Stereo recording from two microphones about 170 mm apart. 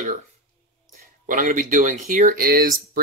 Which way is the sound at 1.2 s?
50° right (ahead or behind).